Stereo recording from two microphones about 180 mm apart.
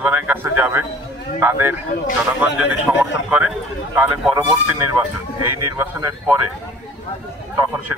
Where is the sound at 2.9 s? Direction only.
10° right (ahead or behind).